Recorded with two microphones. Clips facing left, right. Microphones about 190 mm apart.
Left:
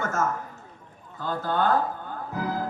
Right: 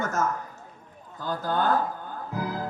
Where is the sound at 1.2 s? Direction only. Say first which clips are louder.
Left 1 dB; 40° right (ahead or behind).